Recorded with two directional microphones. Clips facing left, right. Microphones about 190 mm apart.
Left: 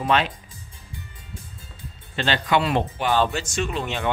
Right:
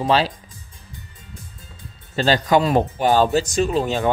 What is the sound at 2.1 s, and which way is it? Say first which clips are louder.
Speech: right 5 dB; 40° right (ahead or behind).